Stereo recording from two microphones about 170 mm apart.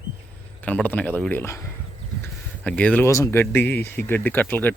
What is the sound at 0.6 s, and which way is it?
Speech, 10° left (ahead or behind).